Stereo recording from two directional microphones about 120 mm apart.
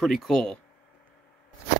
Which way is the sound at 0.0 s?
Centre (ahead or behind).